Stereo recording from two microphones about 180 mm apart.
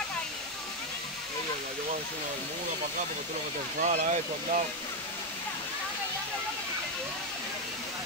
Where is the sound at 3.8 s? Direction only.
40° right (ahead or behind).